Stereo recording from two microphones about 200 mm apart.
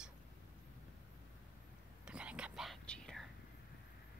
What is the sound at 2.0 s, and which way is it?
Whispering, 5° right (ahead or behind).